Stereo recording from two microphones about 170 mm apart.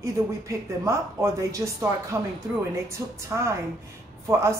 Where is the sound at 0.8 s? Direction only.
15° right (ahead or behind).